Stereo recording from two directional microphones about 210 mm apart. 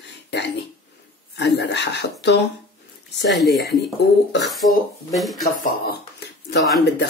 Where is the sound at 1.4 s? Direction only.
55° left (ahead or behind).